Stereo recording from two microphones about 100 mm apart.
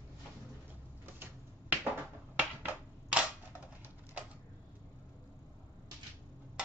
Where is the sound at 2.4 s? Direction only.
10° right (ahead or behind).